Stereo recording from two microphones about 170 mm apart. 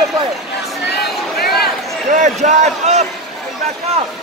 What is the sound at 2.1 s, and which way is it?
Speech, 45° right (ahead or behind).